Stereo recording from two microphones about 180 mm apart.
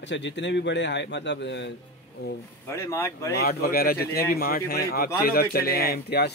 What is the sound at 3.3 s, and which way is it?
Speech, 60° left (ahead or behind).